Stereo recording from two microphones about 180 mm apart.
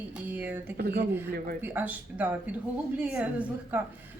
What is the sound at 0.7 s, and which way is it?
Speech, 60° right (ahead or behind).